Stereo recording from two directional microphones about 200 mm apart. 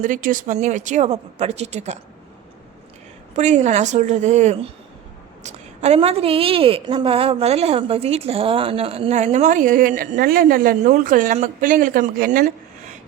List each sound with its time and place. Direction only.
0.0 s a woman's voice: 40° right (ahead or behind)
3.3 s a woman's voice: 35° right (ahead or behind)